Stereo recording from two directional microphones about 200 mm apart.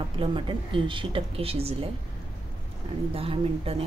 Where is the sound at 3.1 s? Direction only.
30° right (ahead or behind).